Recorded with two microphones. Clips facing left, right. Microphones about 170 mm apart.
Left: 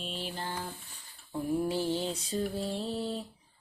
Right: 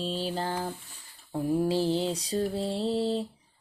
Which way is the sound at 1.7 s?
30° right (ahead or behind).